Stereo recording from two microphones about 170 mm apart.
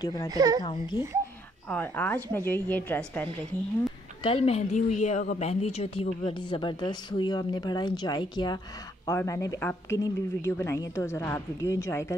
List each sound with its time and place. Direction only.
0.0 s speech: 20° left (ahead or behind)
0.3 s speech: 25° right (ahead or behind)
1.7 s speech: 10° left (ahead or behind)
4.2 s speech: 35° left (ahead or behind); by 12.2 s 15° left (ahead or behind)